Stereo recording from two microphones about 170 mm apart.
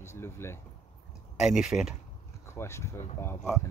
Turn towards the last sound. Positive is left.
turn(degrees=15)  # may be behind; listen again after turning